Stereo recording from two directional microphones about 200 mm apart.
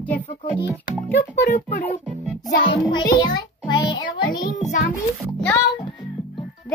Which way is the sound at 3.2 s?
20° left (ahead or behind).